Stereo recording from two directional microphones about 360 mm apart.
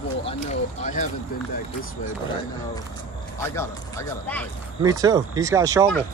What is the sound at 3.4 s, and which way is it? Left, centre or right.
Speech, centre.